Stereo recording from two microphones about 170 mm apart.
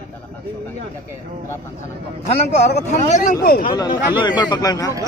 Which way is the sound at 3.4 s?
60° left (ahead or behind).